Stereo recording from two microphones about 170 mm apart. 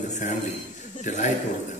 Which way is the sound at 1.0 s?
45° left (ahead or behind).